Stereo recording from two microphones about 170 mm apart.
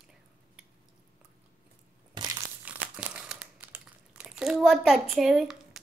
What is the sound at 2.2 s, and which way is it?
Crushing, 25° right (ahead or behind).